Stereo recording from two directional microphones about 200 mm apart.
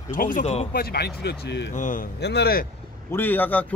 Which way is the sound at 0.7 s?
50° left (ahead or behind).